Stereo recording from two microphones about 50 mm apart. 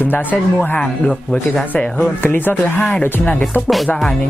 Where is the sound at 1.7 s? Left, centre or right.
Left.